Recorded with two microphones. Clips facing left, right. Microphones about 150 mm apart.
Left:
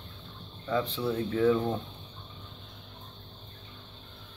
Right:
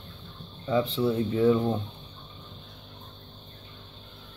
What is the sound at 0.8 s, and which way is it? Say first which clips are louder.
Speech: right 5 dB; centre (ahead or behind).